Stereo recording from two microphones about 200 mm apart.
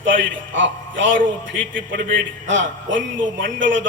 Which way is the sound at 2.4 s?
70° right (ahead or behind).